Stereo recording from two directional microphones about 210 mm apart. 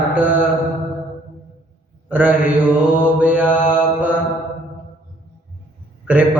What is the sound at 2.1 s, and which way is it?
Mantra, 10° right (ahead or behind).